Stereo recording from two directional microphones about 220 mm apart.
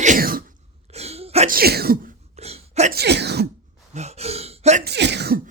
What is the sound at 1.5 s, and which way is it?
Sneeze, 45° right (ahead or behind).